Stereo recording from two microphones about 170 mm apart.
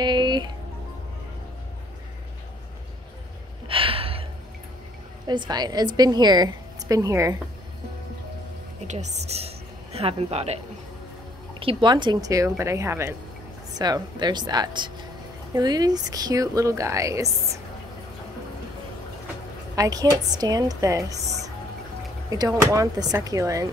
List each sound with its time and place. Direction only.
0.0 s music: 25° right (ahead or behind)
3.6 s gasp: 30° right (ahead or behind)
5.2 s a woman's voice: 25° right (ahead or behind)
8.8 s a woman's voice: 40° right (ahead or behind)
11.6 s a woman's voice: 25° right (ahead or behind)
19.7 s a woman's voice: 20° right (ahead or behind)
22.3 s a woman's voice: 20° right (ahead or behind)